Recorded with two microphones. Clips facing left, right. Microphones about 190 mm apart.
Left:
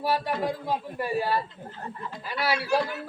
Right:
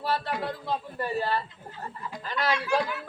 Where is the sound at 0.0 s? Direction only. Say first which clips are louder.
Left 3 dB; 10° left (ahead or behind).